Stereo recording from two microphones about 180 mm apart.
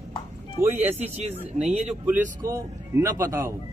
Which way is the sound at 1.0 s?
35° right (ahead or behind).